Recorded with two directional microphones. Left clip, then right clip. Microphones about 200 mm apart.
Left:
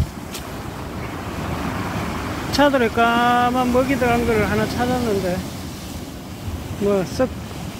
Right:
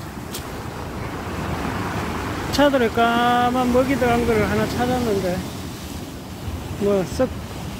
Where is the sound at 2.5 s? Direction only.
5° right (ahead or behind).